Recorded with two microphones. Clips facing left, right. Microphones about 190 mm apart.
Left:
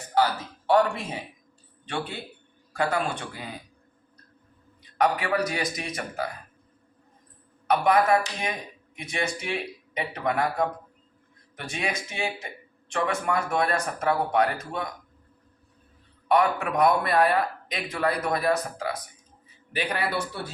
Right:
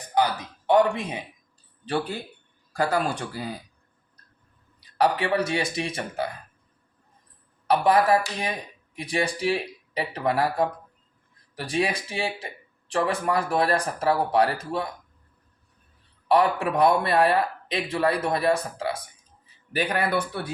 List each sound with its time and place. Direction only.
0.1 s speech: 20° right (ahead or behind)
1.8 s speech: 35° right (ahead or behind)
4.8 s speech: 30° right (ahead or behind)
7.7 s speech: 30° right (ahead or behind)
16.3 s speech: 30° right (ahead or behind)
19.7 s a man's voice: 50° right (ahead or behind)